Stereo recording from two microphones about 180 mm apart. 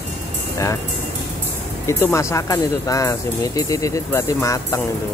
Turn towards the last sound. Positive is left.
turn(degrees=15)  # may be behind; listen again after turning